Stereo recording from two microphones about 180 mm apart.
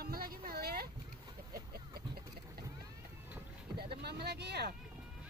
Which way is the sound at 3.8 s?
65° right (ahead or behind).